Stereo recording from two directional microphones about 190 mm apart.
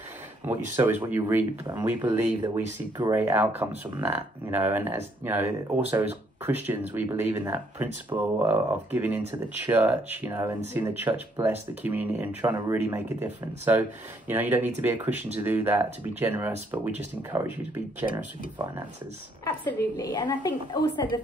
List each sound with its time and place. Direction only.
0.7 s speech: 10° right (ahead or behind)
3.0 s speech: 15° right (ahead or behind)
19.4 s a woman's voice: 10° left (ahead or behind)